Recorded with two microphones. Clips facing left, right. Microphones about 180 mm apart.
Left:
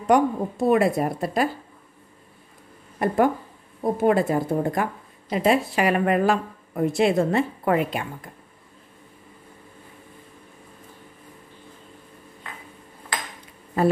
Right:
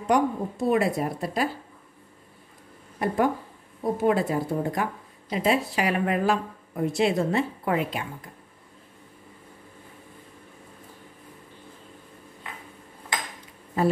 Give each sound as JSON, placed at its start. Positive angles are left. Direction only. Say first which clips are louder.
{"t": 0.0, "sound": "speech", "louder": "left 4 dB", "side_deg": 55}
{"t": 3.0, "sound": "a woman's voice", "louder": "left 3 dB", "side_deg": 50}